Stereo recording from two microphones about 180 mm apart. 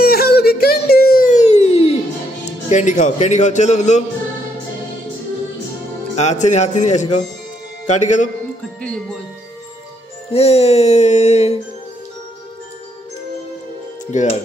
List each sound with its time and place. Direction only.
0.0 s music: 55° left (ahead or behind); by 2.0 s 35° left (ahead or behind)
2.7 s a man's voice: 40° left (ahead or behind)
6.1 s a man's voice: 40° left (ahead or behind)
10.3 s a man's voice: 35° left (ahead or behind)
14.1 s a man's voice: 40° left (ahead or behind)